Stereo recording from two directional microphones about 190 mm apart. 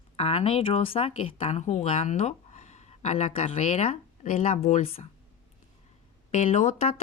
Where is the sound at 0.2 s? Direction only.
30° left (ahead or behind).